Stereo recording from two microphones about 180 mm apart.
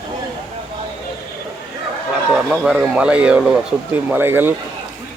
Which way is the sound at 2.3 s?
5° right (ahead or behind).